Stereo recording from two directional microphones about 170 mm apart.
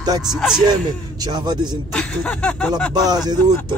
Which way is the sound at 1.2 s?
25° right (ahead or behind).